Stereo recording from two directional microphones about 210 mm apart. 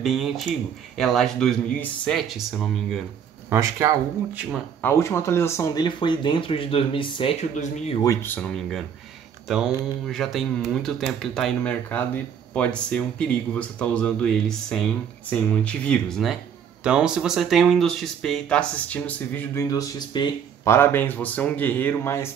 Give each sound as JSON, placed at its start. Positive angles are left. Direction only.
{"t": 0.0, "sound": "speech", "side_deg": 0}
{"t": 3.4, "sound": "speech", "side_deg": -10}
{"t": 4.8, "sound": "speech", "side_deg": 15}
{"t": 8.1, "sound": "speech", "side_deg": 10}